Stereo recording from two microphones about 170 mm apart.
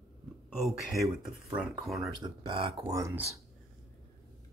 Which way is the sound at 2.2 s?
30° right (ahead or behind).